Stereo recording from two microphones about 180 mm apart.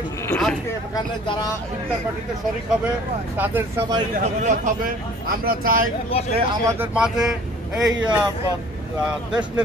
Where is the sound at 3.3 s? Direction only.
10° right (ahead or behind).